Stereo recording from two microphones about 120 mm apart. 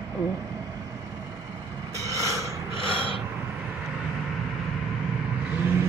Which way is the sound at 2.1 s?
25° right (ahead or behind).